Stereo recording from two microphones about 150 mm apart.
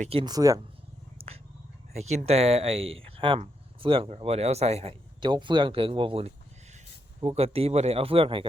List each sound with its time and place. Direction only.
0.0 s speech: 40° right (ahead or behind)
0.3 s speech: 25° right (ahead or behind)
1.9 s speech: 50° right (ahead or behind)